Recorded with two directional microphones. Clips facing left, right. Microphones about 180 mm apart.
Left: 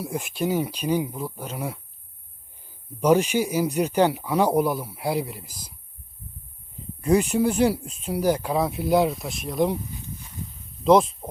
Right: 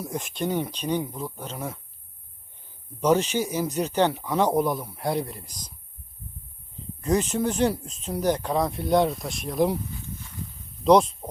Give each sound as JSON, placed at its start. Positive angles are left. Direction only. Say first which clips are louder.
{"t": 0.0, "sound": "speech", "louder": "left 2 dB", "side_deg": 5}
{"t": 3.0, "sound": "speech", "louder": "left 2 dB", "side_deg": 10}
{"t": 7.0, "sound": "speech", "louder": "left 4 dB", "side_deg": 10}
{"t": 10.8, "sound": "speech", "louder": "even", "side_deg": 5}